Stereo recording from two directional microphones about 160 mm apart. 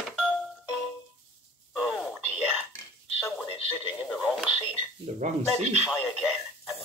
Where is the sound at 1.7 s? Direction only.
5° right (ahead or behind).